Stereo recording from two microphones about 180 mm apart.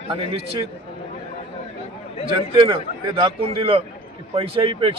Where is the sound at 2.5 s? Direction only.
30° right (ahead or behind).